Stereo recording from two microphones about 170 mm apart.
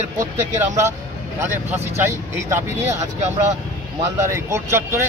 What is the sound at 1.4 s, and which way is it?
Speech, 10° right (ahead or behind).